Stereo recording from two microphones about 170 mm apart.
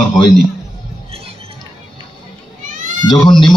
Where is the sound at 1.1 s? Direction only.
35° right (ahead or behind).